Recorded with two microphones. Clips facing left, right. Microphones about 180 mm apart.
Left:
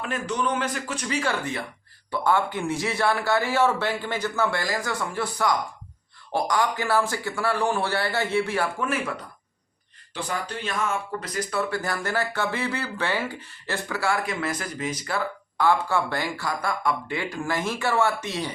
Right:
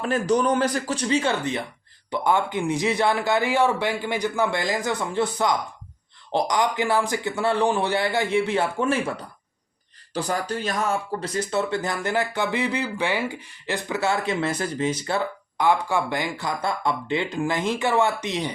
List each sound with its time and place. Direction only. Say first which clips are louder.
0.0 s a man's voice: right 6 dB; 35° right (ahead or behind)
10.2 s speech: right 5 dB; 40° right (ahead or behind); by 18.5 s 20° right (ahead or behind)